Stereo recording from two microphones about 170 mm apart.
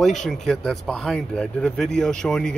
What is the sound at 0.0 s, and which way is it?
Speech, centre (ahead or behind).